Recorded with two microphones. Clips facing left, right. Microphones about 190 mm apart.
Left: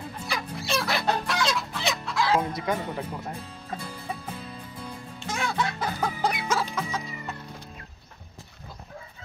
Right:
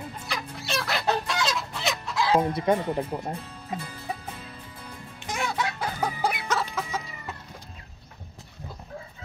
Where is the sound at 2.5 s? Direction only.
30° right (ahead or behind).